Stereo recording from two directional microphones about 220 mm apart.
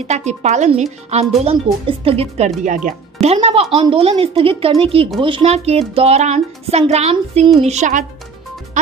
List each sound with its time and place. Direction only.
0.1 s speech: 30° right (ahead or behind)